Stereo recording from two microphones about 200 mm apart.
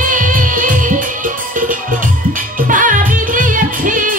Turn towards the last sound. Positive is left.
turn(degrees=-40)  # may be behind; listen again after turning